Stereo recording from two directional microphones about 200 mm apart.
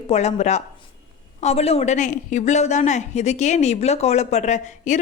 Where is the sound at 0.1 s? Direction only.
35° left (ahead or behind).